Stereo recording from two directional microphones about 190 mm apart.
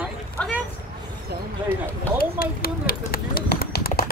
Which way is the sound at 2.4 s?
50° left (ahead or behind).